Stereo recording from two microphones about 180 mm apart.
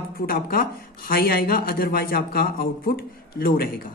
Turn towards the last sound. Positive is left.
turn(degrees=55)  # may be behind; listen again after turning